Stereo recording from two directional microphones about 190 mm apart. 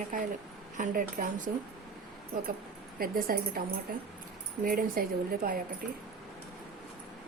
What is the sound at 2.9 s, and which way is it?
Speech, 50° right (ahead or behind).